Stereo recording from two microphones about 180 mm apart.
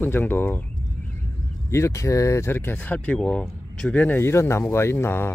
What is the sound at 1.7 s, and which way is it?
Speech, 15° left (ahead or behind).